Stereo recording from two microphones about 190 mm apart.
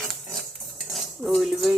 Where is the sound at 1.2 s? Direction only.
Centre (ahead or behind).